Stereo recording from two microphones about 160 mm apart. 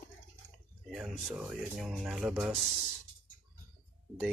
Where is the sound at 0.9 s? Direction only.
5° right (ahead or behind).